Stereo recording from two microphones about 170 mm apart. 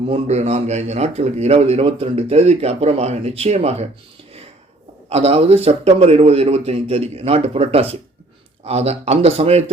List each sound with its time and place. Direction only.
0.0 s a man's voice: 40° right (ahead or behind)
5.0 s a man's voice: 35° right (ahead or behind)